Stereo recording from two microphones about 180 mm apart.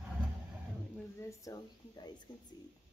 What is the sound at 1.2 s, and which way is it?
Speech, 20° left (ahead or behind).